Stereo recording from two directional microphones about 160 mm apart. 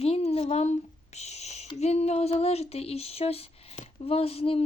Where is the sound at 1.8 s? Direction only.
40° left (ahead or behind).